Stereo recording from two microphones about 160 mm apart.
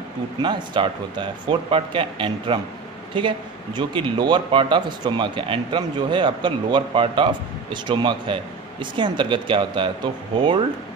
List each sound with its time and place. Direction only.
0.4 s speech: 30° right (ahead or behind)